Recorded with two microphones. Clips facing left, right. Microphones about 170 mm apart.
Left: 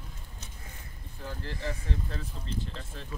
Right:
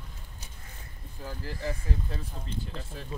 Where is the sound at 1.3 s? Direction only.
5° right (ahead or behind).